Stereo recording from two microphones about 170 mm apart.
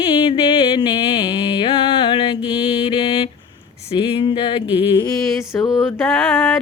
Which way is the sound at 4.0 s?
30° left (ahead or behind).